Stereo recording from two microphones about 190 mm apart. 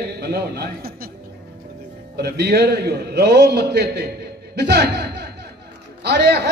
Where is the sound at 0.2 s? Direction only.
60° right (ahead or behind).